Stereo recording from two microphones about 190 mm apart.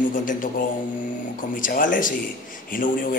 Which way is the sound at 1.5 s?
45° left (ahead or behind).